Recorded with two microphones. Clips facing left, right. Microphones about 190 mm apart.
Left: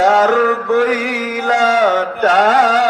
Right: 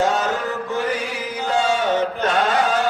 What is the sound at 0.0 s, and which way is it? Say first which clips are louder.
Chant: left 9 dB; 90° left.